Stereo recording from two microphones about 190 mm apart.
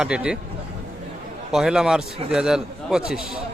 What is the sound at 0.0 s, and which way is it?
Speech, 5° right (ahead or behind).